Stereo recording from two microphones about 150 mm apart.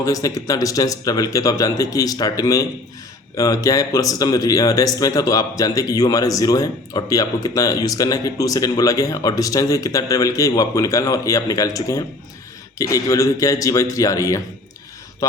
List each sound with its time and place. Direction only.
0.0 s a man's voice: 20° left (ahead or behind)